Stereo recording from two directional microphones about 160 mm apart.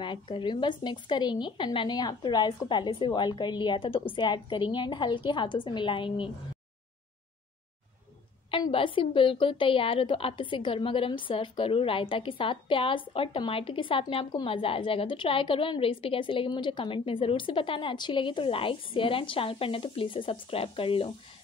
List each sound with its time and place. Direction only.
0.0 s speech: 30° left (ahead or behind)
8.5 s speech: 30° left (ahead or behind)